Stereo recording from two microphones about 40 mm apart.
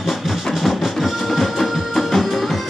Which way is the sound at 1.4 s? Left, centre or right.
Centre.